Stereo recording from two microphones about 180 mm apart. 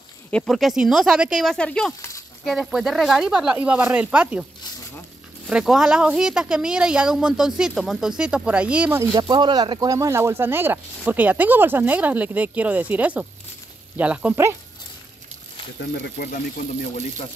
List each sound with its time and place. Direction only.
0.3 s speech: 5° left (ahead or behind)
5.5 s speech: 5° right (ahead or behind)
9.1 s speech: 25° right (ahead or behind)
15.8 s speech: 65° left (ahead or behind)